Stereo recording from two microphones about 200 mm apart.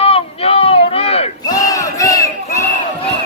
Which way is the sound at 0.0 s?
30° left (ahead or behind).